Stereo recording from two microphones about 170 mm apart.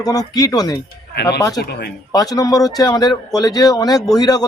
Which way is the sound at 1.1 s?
75° left (ahead or behind).